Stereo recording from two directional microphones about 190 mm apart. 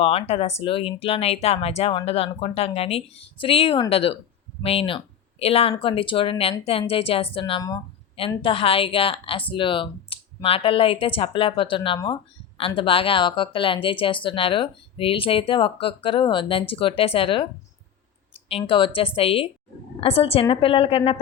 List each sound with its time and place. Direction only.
0.0 s a woman's voice: 30° left (ahead or behind)